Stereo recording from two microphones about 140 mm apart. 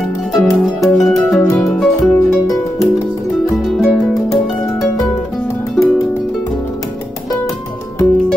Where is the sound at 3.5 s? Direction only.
Centre (ahead or behind).